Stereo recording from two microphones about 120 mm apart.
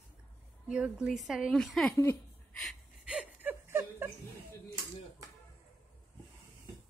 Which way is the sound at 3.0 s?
10° right (ahead or behind).